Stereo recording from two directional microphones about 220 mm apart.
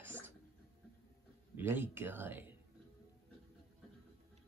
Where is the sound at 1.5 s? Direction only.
10° right (ahead or behind).